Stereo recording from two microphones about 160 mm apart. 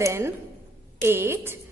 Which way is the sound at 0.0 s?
15° right (ahead or behind).